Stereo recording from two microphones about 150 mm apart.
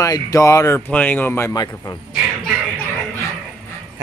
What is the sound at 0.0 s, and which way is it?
Speech, 20° left (ahead or behind).